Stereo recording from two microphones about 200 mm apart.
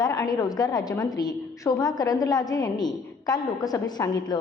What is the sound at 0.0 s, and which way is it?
A woman's voice, 20° left (ahead or behind).